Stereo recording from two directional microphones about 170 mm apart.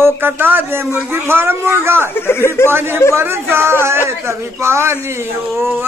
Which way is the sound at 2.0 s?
15° left (ahead or behind).